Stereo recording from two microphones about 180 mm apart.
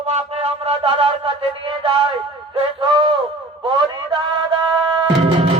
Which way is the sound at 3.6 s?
25° right (ahead or behind).